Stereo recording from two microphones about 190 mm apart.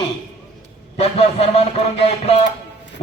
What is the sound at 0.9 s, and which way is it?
A man's voice, 30° left (ahead or behind).